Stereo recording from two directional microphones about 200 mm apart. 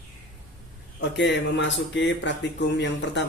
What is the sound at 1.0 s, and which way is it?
Speech, 60° left (ahead or behind).